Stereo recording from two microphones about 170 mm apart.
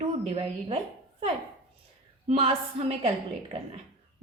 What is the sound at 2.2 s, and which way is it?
Speech, 35° right (ahead or behind).